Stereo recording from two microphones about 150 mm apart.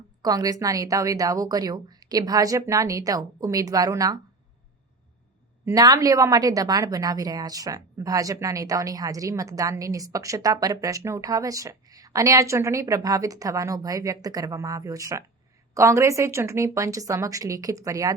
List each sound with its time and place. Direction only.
0.2 s a woman's voice: 25° right (ahead or behind)
5.6 s a woman's voice: 25° right (ahead or behind)